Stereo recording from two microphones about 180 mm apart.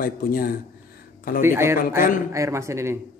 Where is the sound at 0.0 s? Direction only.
55° left (ahead or behind).